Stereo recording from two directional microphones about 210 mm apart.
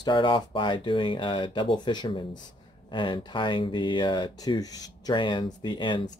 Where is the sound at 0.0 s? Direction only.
25° left (ahead or behind).